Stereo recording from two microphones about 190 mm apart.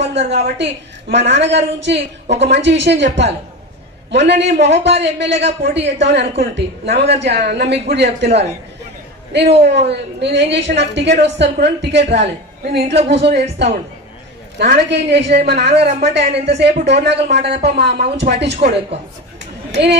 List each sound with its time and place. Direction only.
0.0 s a woman's voice: 65° right (ahead or behind)
9.6 s a woman's voice: 65° right (ahead or behind)